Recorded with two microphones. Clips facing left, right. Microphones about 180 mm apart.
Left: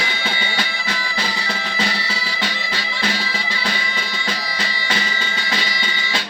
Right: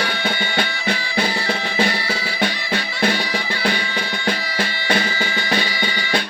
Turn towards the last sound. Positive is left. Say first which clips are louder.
# right 4 dB
turn(degrees=-55)  # may be behind; listen again after turning